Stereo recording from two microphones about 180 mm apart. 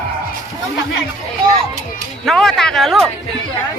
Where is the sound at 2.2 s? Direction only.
Centre (ahead or behind).